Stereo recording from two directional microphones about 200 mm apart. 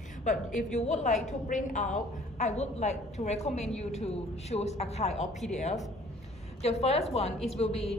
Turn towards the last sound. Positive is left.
turn(degrees=30)  # may be behind; listen again after turning